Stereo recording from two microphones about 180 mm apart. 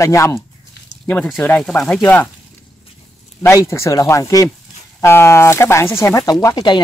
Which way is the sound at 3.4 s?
15° left (ahead or behind).